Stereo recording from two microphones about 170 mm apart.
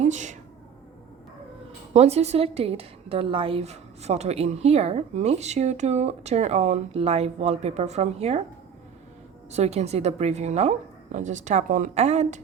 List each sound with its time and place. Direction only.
0.0 s a woman's voice: 45° right (ahead or behind)
1.9 s a woman's voice: 40° right (ahead or behind)
9.5 s a woman's voice: 40° right (ahead or behind)